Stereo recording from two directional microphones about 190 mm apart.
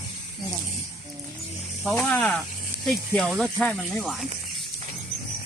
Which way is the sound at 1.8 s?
Centre (ahead or behind).